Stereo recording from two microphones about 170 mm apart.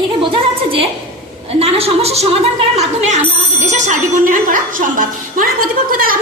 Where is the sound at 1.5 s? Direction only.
35° right (ahead or behind).